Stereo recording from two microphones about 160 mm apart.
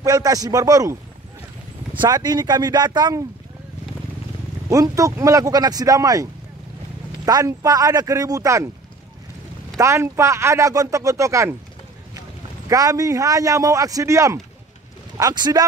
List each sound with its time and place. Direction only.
0.0 s a man's voice: 20° right (ahead or behind)
2.0 s a man's voice: 25° right (ahead or behind)
4.6 s a man's voice: 20° right (ahead or behind)
7.2 s a man's voice: 25° right (ahead or behind)
9.8 s a man's voice: 20° right (ahead or behind)
12.6 s a man's voice: 20° right (ahead or behind)